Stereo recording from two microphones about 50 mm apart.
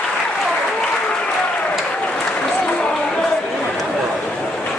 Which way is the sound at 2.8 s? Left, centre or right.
Centre.